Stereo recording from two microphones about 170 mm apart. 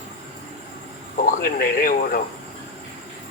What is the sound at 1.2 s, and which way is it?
Speech, 60° left (ahead or behind).